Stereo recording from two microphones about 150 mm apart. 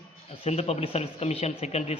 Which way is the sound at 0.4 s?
45° left (ahead or behind).